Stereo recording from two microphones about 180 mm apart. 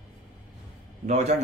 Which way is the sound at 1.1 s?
40° right (ahead or behind).